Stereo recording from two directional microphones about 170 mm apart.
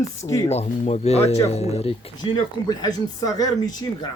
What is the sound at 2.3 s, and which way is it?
Speech, 25° left (ahead or behind).